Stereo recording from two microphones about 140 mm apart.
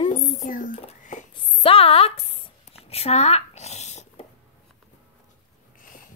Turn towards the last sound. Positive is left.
turn(degrees=55)  # may be behind; listen again after turning